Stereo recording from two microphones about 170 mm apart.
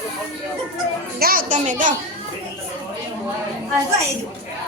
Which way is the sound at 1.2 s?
55° right (ahead or behind).